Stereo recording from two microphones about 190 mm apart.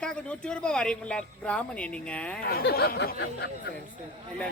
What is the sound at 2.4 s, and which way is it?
Speech, 50° left (ahead or behind).